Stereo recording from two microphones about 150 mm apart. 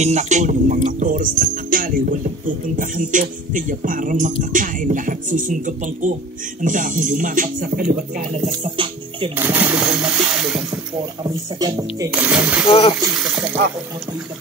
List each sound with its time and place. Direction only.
0.0 s music: 50° right (ahead or behind); by 8.0 s 75° right (ahead or behind)
8.6 s speech: 35° right (ahead or behind)
9.4 s speech: 15° right (ahead or behind)
11.2 s speech: 25° right (ahead or behind)
12.1 s speech: 10° right (ahead or behind)
12.6 s speech: 45° left (ahead or behind)
13.2 s speech: centre (ahead or behind)